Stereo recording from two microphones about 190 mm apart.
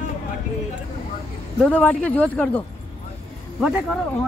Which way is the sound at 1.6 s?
5° left (ahead or behind).